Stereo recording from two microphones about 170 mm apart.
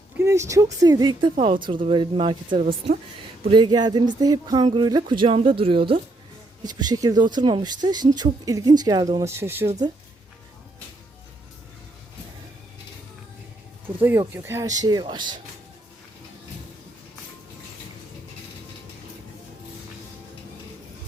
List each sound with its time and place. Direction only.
0.2 s speech: 15° right (ahead or behind)
2.6 s speech: 55° right (ahead or behind)
3.4 s speech: 25° right (ahead or behind)
13.8 s speech: 10° right (ahead or behind)